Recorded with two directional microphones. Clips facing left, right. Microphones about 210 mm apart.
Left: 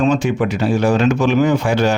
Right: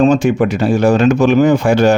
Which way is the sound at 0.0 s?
45° right (ahead or behind).